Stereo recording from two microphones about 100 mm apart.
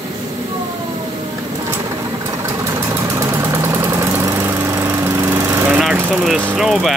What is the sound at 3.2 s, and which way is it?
Engine, 25° right (ahead or behind).